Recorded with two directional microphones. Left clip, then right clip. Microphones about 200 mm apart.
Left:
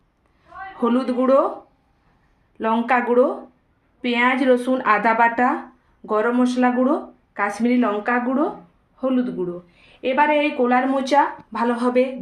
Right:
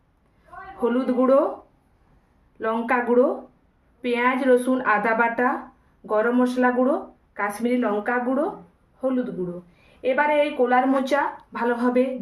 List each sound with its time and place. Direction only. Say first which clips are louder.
0.8 s a woman's voice: left 1 dB; 40° left (ahead or behind)
2.6 s a woman's voice: left 4 dB; 40° left (ahead or behind)